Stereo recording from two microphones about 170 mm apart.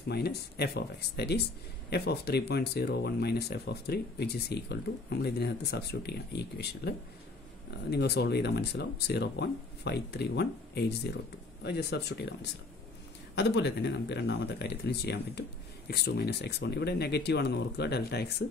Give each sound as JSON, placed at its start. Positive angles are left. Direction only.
{"t": 0.1, "sound": "speech", "side_deg": 70}